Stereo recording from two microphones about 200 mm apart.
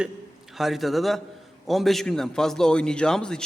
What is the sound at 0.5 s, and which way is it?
A man's voice, centre (ahead or behind).